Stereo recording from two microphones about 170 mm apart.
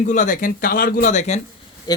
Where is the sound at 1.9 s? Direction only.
25° left (ahead or behind).